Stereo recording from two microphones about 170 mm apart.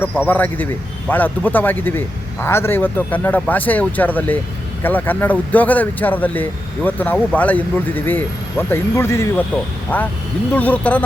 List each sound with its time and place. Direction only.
0.3 s speech: 10° left (ahead or behind)